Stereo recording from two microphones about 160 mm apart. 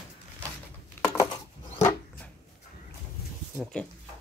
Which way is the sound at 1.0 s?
15° left (ahead or behind).